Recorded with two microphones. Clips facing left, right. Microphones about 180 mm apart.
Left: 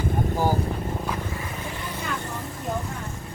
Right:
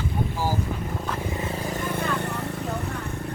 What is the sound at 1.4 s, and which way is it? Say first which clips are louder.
Vehicle: right 5 dB; 25° right (ahead or behind).